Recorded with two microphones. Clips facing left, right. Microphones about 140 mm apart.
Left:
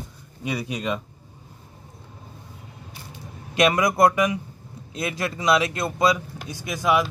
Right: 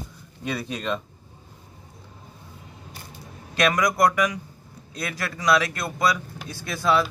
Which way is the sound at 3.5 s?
25° left (ahead or behind).